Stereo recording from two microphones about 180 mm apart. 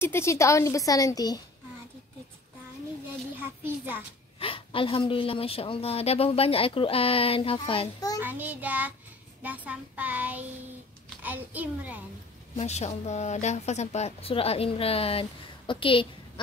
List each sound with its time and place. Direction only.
0.0 s a woman's voice: 15° left (ahead or behind)
3.3 s child singing: 10° right (ahead or behind)
4.4 s a woman's voice: 30° left (ahead or behind)
8.2 s child singing: 10° right (ahead or behind)
12.5 s a woman's voice: 40° left (ahead or behind)